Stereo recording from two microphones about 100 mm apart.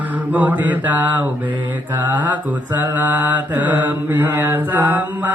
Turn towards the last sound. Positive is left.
turn(degrees=-20)  # may be behind; listen again after turning